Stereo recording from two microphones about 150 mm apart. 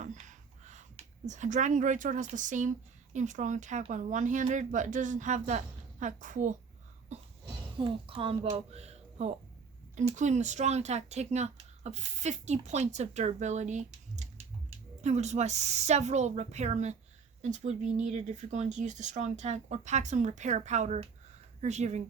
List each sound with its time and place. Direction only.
0.0 s speech: 55° right (ahead or behind)
7.1 s cough: 50° right (ahead or behind)
7.8 s a woman's voice: 35° right (ahead or behind)